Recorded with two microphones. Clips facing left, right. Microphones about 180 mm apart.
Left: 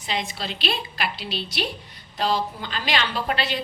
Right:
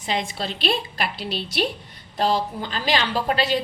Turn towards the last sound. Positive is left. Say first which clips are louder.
# right 4 dB
turn(degrees=-40)  # may be behind; listen again after turning